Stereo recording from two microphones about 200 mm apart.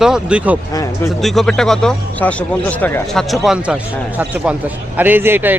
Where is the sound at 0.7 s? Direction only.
15° left (ahead or behind).